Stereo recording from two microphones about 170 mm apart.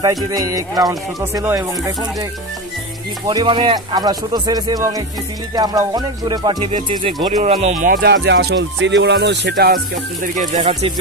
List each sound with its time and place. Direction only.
0.0 s speech: 20° right (ahead or behind)
3.3 s speech: 25° right (ahead or behind); by 7.9 s 40° right (ahead or behind)
7.9 s music: 80° right
10.2 s speech: 45° right (ahead or behind)